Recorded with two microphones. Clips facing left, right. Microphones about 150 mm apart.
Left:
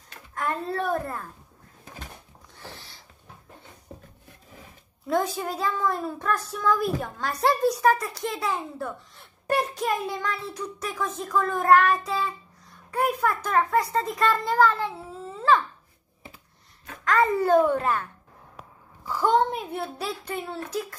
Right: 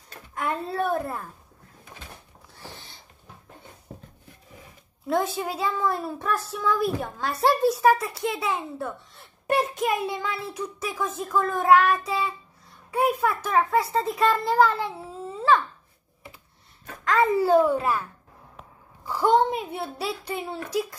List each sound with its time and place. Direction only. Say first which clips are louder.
0.3 s a child's voice: even; 5° right (ahead or behind)
2.6 s a sound: even; 20° right (ahead or behind)
5.0 s a child's voice: even; 5° right (ahead or behind)
17.0 s a child's voice: right 1 dB; centre (ahead or behind)
19.0 s a child's voice: right 2 dB; 10° right (ahead or behind)